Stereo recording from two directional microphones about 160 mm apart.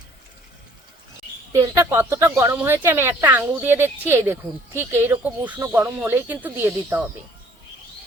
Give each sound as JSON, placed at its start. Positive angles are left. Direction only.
{"t": 1.5, "sound": "speech", "side_deg": -20}